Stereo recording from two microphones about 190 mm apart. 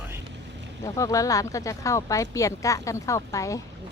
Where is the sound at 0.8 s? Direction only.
20° left (ahead or behind).